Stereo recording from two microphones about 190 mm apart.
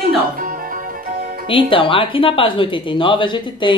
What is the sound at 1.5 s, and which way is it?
A woman's voice, 25° left (ahead or behind).